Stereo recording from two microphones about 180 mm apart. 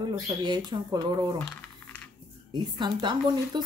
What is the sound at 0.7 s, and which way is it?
Speech, 25° right (ahead or behind).